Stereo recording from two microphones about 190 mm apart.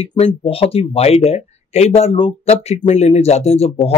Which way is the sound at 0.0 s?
30° left (ahead or behind).